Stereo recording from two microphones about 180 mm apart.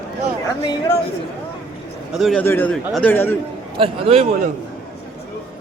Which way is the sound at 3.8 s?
35° right (ahead or behind).